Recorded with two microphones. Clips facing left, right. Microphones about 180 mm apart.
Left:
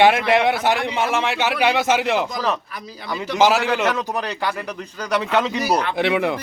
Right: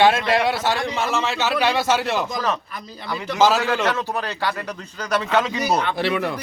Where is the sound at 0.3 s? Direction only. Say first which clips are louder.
Left 3 dB; 20° left (ahead or behind).